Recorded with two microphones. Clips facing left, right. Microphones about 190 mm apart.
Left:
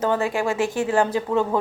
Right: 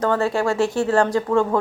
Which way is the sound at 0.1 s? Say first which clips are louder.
Right 2 dB; 15° left (ahead or behind).